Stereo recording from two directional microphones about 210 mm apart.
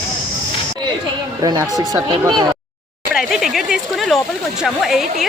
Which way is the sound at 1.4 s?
20° right (ahead or behind).